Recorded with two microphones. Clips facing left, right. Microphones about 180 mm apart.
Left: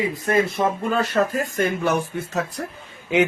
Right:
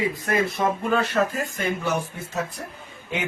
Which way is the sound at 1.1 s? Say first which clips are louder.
Left 2 dB; 40° left (ahead or behind).